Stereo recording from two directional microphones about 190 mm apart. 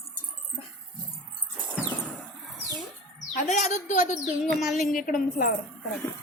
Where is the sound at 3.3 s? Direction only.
40° left (ahead or behind).